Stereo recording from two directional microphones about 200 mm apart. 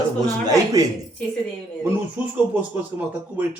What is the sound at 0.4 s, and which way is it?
Speech, 15° right (ahead or behind).